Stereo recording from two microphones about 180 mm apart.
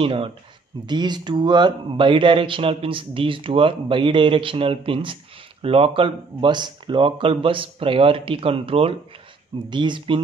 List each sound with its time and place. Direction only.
0.0 s speech: 30° right (ahead or behind)